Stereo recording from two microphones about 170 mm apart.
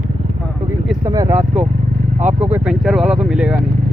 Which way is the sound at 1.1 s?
20° right (ahead or behind).